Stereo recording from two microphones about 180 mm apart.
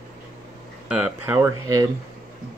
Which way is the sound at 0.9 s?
5° right (ahead or behind).